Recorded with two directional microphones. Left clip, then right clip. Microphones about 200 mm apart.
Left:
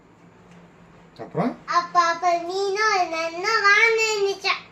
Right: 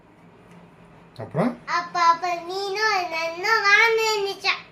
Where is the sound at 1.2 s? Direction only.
70° right (ahead or behind).